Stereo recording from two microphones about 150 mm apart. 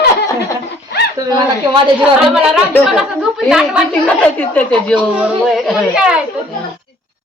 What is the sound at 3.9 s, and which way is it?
Speech, 10° left (ahead or behind).